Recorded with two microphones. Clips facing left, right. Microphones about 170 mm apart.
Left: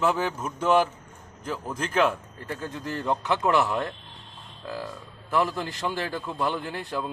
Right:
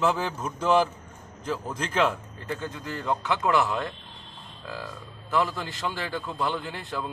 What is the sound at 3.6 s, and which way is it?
Speech, 10° left (ahead or behind).